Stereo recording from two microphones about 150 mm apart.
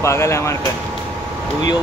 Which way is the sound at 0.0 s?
20° left (ahead or behind).